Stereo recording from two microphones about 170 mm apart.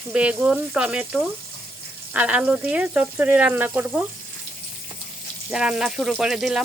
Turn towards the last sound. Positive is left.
turn(degrees=0)  # may be behind; listen again after turning